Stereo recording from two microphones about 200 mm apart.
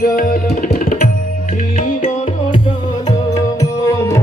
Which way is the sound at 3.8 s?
15° left (ahead or behind).